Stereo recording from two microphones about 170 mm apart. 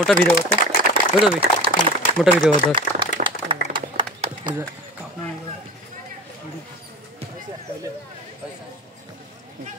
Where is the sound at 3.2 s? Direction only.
55° right (ahead or behind).